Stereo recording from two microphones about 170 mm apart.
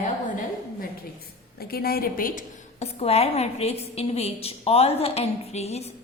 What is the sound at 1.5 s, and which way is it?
A woman's voice, 65° left (ahead or behind).